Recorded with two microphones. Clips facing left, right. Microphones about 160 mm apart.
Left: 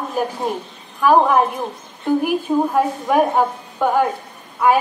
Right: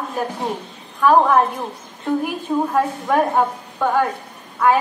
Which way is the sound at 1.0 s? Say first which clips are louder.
Even; 10° left (ahead or behind).